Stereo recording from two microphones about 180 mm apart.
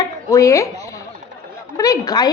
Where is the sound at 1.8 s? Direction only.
20° left (ahead or behind).